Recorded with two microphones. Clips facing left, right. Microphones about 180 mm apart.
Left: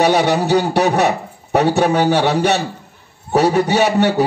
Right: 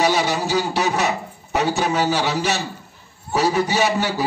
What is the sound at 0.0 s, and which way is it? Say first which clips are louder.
Speech: left 5 dB; 60° left (ahead or behind).